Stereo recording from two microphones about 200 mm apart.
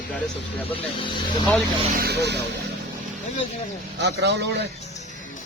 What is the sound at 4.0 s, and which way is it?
Speech, 60° right (ahead or behind).